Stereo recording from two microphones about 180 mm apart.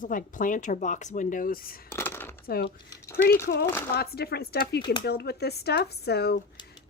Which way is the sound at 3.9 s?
60° left (ahead or behind).